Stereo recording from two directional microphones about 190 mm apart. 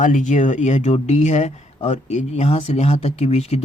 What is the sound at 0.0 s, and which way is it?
A man's voice, 40° left (ahead or behind).